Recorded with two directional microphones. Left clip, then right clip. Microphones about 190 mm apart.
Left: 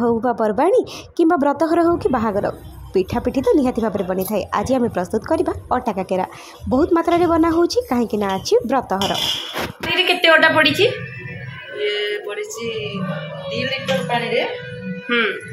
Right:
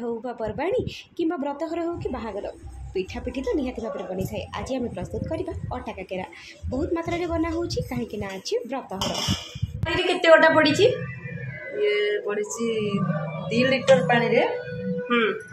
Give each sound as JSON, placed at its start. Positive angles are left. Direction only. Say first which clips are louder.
{"t": 0.0, "sound": "a woman's voice", "louder": "left 12 dB", "side_deg": 35}
{"t": 9.9, "sound": "a woman's voice", "louder": "left 3 dB", "side_deg": 10}
{"t": 11.8, "sound": "music", "louder": "left 1 dB", "side_deg": -35}
{"t": 13.5, "sound": "a woman's voice", "louder": "right 3 dB", "side_deg": -55}